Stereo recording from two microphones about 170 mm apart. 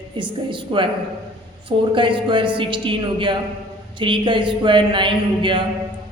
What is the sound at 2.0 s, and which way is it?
A woman's voice, 30° right (ahead or behind).